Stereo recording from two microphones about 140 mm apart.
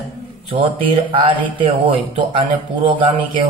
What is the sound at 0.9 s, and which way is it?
Speech, 35° right (ahead or behind).